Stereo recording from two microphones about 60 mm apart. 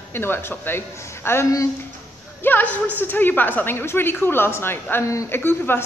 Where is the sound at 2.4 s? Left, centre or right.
Left.